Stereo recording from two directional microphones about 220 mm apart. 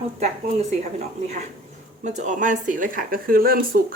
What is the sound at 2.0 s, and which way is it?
Speech, 35° right (ahead or behind).